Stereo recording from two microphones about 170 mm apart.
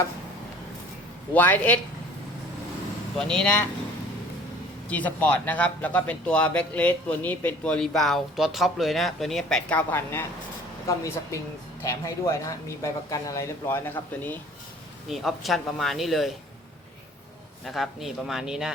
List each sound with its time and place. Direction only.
1.3 s speech: 10° left (ahead or behind)
3.2 s speech: 5° left (ahead or behind)
4.9 s speech: 10° left (ahead or behind)
15.1 s speech: centre (ahead or behind)
17.7 s speech: centre (ahead or behind)